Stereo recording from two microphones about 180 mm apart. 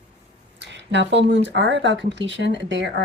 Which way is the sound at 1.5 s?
80° right.